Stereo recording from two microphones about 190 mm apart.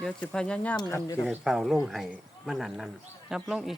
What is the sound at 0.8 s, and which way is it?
Speech, 15° left (ahead or behind).